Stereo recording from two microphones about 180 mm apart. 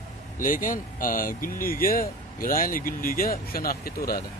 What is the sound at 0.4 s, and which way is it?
Speech, 50° left (ahead or behind).